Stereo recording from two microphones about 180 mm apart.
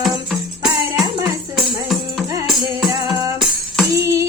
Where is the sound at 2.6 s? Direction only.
20° right (ahead or behind).